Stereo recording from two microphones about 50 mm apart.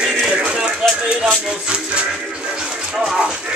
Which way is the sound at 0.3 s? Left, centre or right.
Right.